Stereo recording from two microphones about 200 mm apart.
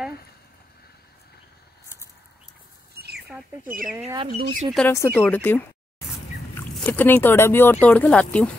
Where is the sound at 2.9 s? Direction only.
55° right (ahead or behind).